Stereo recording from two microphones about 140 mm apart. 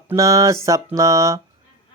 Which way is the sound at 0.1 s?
25° right (ahead or behind).